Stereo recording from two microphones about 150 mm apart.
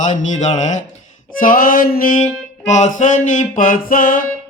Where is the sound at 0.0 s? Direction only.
55° left (ahead or behind).